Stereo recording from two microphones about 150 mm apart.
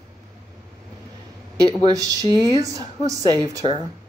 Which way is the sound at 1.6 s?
25° right (ahead or behind).